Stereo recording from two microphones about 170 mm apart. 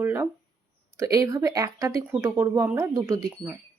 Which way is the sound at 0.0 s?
15° right (ahead or behind).